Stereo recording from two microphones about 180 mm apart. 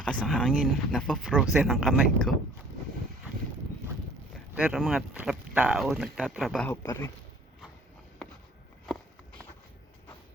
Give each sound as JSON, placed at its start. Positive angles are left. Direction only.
{"t": 0.0, "sound": "speech", "side_deg": 5}
{"t": 4.5, "sound": "speech", "side_deg": -10}
{"t": 6.7, "sound": "speech", "side_deg": 20}